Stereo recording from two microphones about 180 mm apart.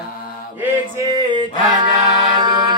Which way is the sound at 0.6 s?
20° right (ahead or behind).